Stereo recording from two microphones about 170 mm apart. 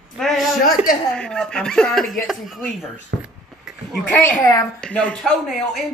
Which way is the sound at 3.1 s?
90° right.